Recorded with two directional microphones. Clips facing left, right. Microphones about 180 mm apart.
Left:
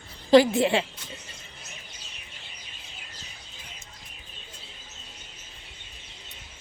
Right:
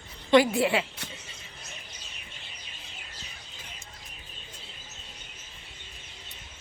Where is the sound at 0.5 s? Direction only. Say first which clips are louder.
Left 2 dB; 25° left (ahead or behind).